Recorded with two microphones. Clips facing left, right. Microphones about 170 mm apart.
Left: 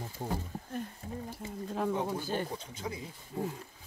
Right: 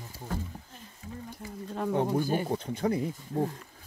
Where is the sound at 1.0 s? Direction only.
50° left (ahead or behind).